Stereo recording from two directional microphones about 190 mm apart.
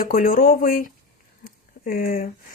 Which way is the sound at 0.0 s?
50° left (ahead or behind).